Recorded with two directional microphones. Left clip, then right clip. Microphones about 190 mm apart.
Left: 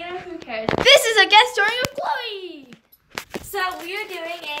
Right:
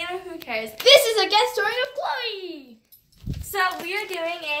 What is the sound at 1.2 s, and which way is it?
Speech, 25° left (ahead or behind).